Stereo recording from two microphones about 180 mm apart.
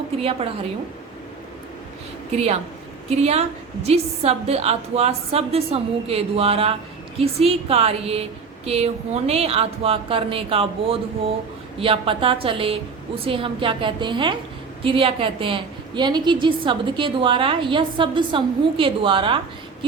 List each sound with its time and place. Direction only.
0.2 s a woman's voice: 30° right (ahead or behind)
2.3 s a woman's voice: 35° right (ahead or behind)